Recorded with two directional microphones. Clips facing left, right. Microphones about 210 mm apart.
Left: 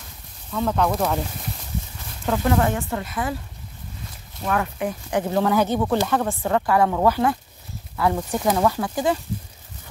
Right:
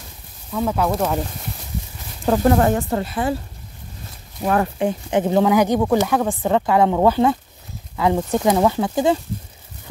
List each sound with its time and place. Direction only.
0.5 s speech: 10° right (ahead or behind)
2.2 s speech: 40° right (ahead or behind)
4.5 s speech: 30° right (ahead or behind)